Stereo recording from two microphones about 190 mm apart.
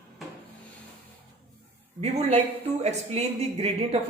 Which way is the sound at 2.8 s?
35° right (ahead or behind).